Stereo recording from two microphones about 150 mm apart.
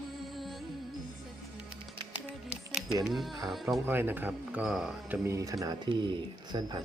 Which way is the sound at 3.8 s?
15° right (ahead or behind).